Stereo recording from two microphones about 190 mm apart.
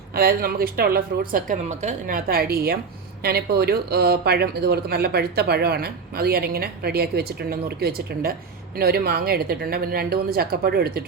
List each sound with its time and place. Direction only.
0.1 s speech: 50° right (ahead or behind)